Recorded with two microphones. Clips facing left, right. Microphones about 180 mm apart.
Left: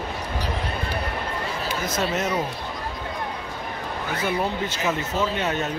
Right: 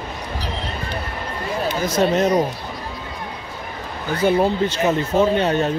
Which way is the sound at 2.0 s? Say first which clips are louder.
Right 9 dB; 35° right (ahead or behind).